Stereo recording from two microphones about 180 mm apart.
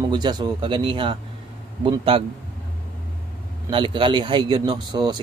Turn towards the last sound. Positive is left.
turn(degrees=-25)  # may be behind; listen again after turning